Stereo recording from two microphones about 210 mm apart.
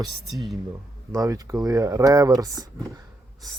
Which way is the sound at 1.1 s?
15° right (ahead or behind).